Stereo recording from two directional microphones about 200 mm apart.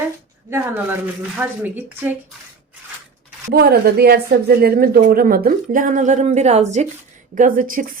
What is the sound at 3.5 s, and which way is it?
Speech, 50° right (ahead or behind).